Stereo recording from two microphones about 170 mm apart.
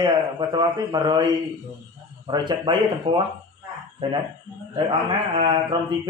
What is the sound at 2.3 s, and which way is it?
Speech, 25° right (ahead or behind).